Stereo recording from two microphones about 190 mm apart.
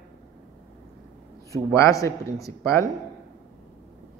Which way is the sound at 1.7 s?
15° left (ahead or behind).